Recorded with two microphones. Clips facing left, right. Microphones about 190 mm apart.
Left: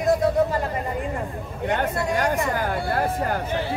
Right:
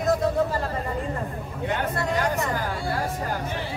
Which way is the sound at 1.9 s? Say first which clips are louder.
Left 2 dB; 10° left (ahead or behind).